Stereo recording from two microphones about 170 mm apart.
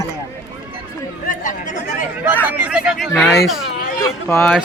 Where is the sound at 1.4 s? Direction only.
50° left (ahead or behind).